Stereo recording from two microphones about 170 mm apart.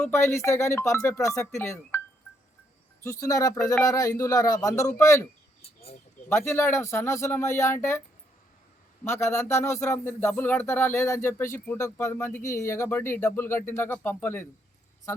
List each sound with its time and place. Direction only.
0.0 s speech: 15° left (ahead or behind)
3.0 s speech: 20° left (ahead or behind)
6.2 s speech: 15° left (ahead or behind)
9.0 s speech: 15° left (ahead or behind)